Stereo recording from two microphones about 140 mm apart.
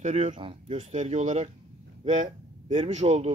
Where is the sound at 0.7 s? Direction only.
60° right (ahead or behind).